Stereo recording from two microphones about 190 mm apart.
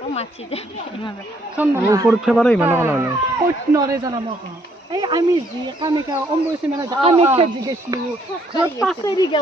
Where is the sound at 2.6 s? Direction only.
10° right (ahead or behind); by 7.5 s 30° right (ahead or behind).